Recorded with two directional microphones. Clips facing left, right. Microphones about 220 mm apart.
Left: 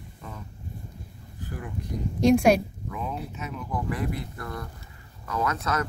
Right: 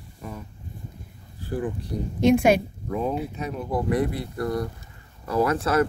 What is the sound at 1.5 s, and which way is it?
Speech, 30° right (ahead or behind).